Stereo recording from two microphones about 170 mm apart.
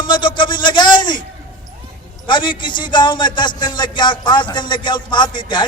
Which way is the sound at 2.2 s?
25° left (ahead or behind).